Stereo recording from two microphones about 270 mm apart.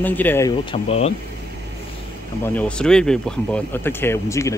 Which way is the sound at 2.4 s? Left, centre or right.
Centre.